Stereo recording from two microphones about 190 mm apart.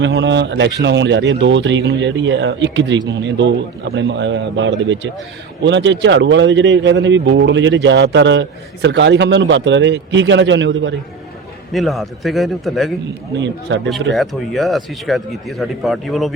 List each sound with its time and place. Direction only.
0.0 s speech: 70° right (ahead or behind)
11.7 s speech: centre (ahead or behind)
13.3 s speech: 70° right (ahead or behind)
14.1 s speech: centre (ahead or behind)